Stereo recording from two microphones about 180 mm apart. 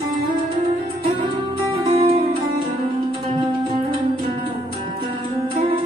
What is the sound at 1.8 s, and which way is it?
Music, 30° right (ahead or behind).